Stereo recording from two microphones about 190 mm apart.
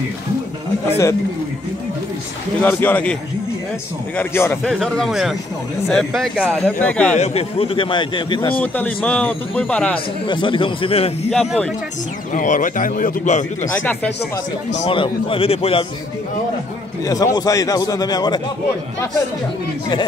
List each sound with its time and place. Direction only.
0.8 s speech: 15° left (ahead or behind)
2.6 s speech: 10° left (ahead or behind)
4.2 s speech: 10° left (ahead or behind)
4.6 s speech: centre (ahead or behind)
7.2 s a man's voice: 30° left (ahead or behind)
8.5 s speech: 10° left (ahead or behind)
10.2 s a man's voice: 25° left (ahead or behind)
11.3 s speech: centre (ahead or behind)
12.3 s a man's voice: 40° left (ahead or behind)
13.8 s speech: 10° left (ahead or behind)
14.8 s a man's voice: 25° left (ahead or behind)
17.0 s a man's voice: 20° left (ahead or behind)